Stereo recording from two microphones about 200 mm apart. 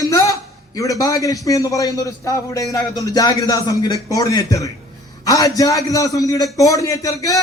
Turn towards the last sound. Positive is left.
turn(degrees=15)  # may be behind; listen again after turning